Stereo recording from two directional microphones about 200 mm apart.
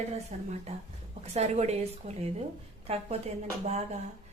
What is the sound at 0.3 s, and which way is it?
A woman's voice, 30° right (ahead or behind).